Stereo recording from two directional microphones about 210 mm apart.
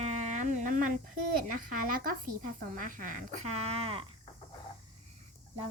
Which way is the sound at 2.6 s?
40° right (ahead or behind).